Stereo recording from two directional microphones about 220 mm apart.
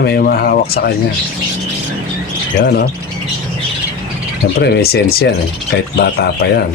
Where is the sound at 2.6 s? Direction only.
50° left (ahead or behind).